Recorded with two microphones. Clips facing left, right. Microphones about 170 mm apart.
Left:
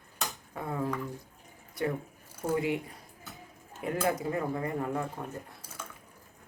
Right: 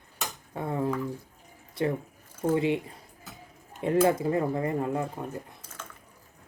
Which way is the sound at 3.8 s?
25° right (ahead or behind).